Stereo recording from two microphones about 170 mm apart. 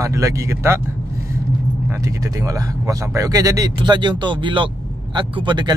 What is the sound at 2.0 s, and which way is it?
Speech, 20° right (ahead or behind).